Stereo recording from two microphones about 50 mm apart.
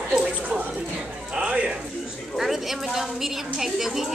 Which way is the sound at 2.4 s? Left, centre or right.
Centre.